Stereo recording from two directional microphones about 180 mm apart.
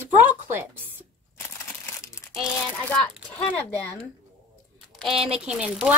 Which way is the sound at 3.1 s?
5° left (ahead or behind).